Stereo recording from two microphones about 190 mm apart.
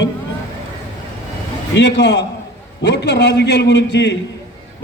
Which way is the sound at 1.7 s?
65° left (ahead or behind).